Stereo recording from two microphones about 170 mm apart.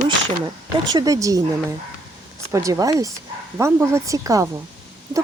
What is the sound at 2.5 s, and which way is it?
Speech, 20° right (ahead or behind).